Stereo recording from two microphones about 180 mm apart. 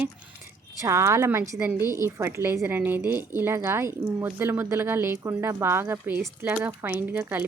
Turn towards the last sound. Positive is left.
turn(degrees=-10)  # may be behind; listen again after turning